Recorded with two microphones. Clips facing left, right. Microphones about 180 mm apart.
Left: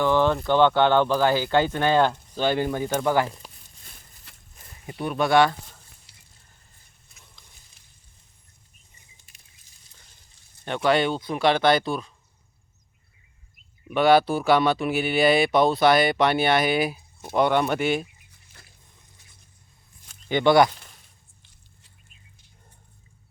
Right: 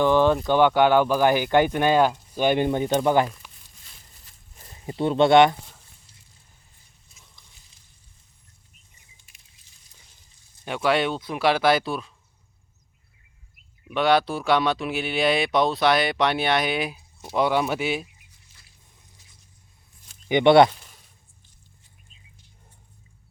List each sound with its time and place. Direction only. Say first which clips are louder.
0.0 s speech: right 2 dB; 15° right (ahead or behind)
3.2 s speech: left 1 dB; 30° left (ahead or behind)
4.3 s a sound: left 5 dB; 70° left (ahead or behind)
4.9 s speech: right 5 dB; 25° right (ahead or behind)
6.1 s a sound: right 1 dB; 75° left (ahead or behind)
10.8 s speech: left 1 dB; centre (ahead or behind)
13.8 s speech: left 3 dB; centre (ahead or behind)
18.3 s a sound: left 5 dB; 55° left (ahead or behind)
20.2 s speech: right 3 dB; 20° right (ahead or behind)